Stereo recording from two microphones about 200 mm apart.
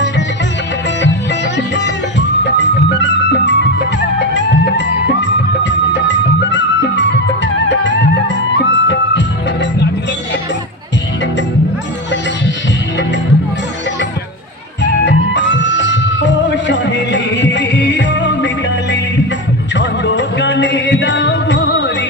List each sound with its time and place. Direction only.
1.0 s music: 60° left (ahead or behind)
14.8 s music: 60° left (ahead or behind)